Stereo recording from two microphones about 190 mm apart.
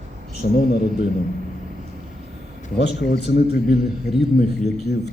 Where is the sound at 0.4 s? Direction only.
55° left (ahead or behind).